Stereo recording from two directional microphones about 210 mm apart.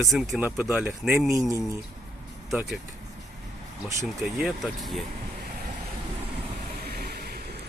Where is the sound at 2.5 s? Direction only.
Centre (ahead or behind).